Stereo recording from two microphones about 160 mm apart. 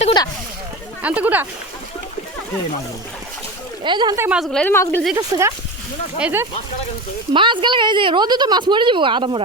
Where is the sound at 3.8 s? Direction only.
30° right (ahead or behind).